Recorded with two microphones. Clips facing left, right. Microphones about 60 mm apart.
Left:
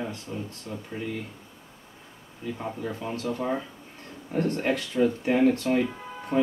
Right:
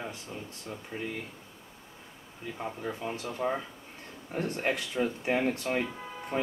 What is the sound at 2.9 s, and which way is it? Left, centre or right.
Speech, centre.